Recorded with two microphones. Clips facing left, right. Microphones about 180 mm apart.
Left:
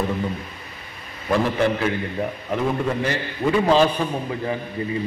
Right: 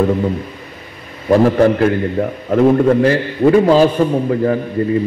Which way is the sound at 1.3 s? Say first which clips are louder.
Right 9 dB; 45° right (ahead or behind).